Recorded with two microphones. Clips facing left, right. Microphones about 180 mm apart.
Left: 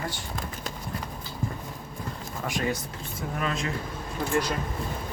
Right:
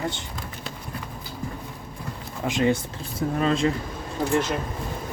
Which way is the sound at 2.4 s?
20° right (ahead or behind).